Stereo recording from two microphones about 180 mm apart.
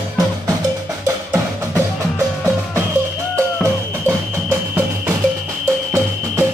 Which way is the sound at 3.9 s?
15° right (ahead or behind).